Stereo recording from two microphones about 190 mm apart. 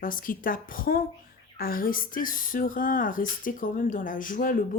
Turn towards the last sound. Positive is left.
turn(degrees=45)  # may be behind; listen again after turning